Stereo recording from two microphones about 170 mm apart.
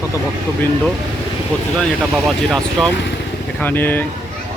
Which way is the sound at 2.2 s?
Centre (ahead or behind).